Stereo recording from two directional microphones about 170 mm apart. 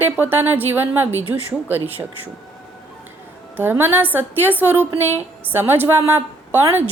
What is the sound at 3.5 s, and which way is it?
A woman's voice, 10° right (ahead or behind).